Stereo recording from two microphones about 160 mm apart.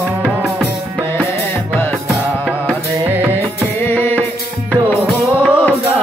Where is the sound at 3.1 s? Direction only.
15° right (ahead or behind).